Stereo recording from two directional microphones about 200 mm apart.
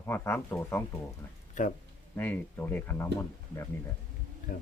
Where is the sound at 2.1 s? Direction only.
10° left (ahead or behind).